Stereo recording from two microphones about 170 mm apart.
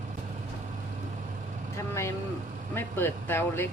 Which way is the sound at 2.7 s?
10° left (ahead or behind).